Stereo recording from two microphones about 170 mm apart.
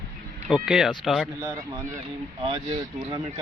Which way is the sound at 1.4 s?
20° right (ahead or behind).